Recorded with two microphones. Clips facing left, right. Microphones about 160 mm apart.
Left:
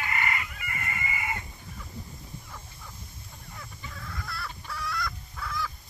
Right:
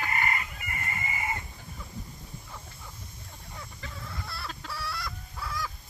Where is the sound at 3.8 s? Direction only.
90° right.